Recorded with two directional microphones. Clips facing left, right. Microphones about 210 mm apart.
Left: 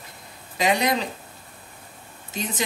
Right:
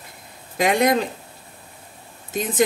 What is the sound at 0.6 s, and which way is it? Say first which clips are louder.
Speech: right 4 dB; 50° right (ahead or behind).